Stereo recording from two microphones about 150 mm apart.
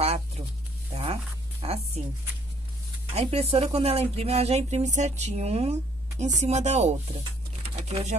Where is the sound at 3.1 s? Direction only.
45° right (ahead or behind).